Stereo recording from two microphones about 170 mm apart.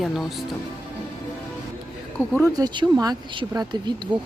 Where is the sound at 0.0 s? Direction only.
Centre (ahead or behind).